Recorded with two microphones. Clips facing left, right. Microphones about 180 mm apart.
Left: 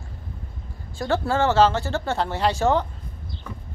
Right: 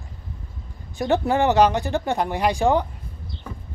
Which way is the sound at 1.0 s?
20° right (ahead or behind).